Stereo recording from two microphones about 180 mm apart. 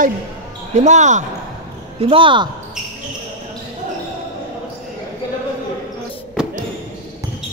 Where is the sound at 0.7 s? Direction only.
40° right (ahead or behind).